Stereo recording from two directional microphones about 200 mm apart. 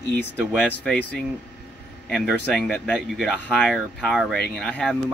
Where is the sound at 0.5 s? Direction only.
5° left (ahead or behind).